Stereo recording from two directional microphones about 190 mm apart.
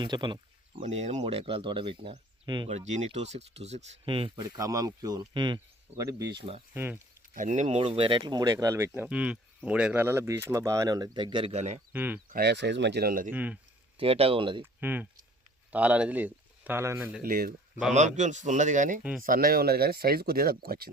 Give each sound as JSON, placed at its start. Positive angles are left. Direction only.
{"t": 0.0, "sound": "speech", "side_deg": -25}
{"t": 0.8, "sound": "speech", "side_deg": -35}
{"t": 2.6, "sound": "speech", "side_deg": -35}
{"t": 4.5, "sound": "speech", "side_deg": -15}
{"t": 6.7, "sound": "speech", "side_deg": -10}
{"t": 7.3, "sound": "speech", "side_deg": -40}
{"t": 11.9, "sound": "speech", "side_deg": -10}
{"t": 12.3, "sound": "speech", "side_deg": -60}
{"t": 13.3, "sound": "speech", "side_deg": -10}
{"t": 14.0, "sound": "speech", "side_deg": -30}
{"t": 14.6, "sound": "speech", "side_deg": -10}
{"t": 17.2, "sound": "speech", "side_deg": -50}
{"t": 17.9, "sound": "speech", "side_deg": -40}